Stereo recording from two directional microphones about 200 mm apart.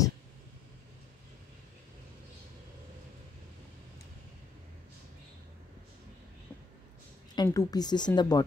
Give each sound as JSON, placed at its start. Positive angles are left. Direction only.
{"t": 7.3, "sound": "a woman's voice", "side_deg": 15}